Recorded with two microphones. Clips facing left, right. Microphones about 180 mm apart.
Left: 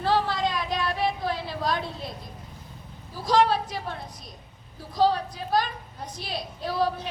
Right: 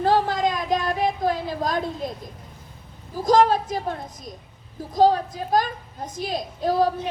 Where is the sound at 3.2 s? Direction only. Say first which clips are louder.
Right 4 dB; 45° right (ahead or behind).